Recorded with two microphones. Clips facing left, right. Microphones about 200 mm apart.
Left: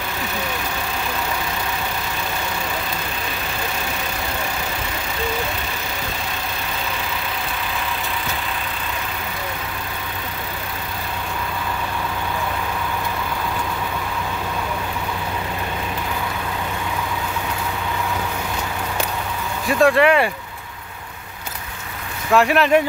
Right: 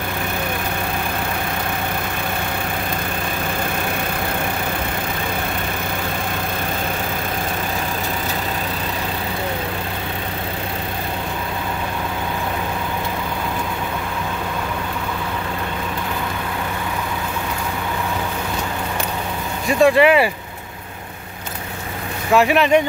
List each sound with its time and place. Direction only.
19.8 s speech: centre (ahead or behind)
22.3 s speech: centre (ahead or behind)